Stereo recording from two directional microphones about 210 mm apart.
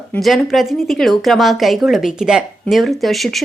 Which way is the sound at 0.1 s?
Centre (ahead or behind).